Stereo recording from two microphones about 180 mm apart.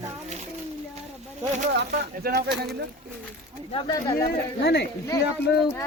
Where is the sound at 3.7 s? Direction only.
30° left (ahead or behind).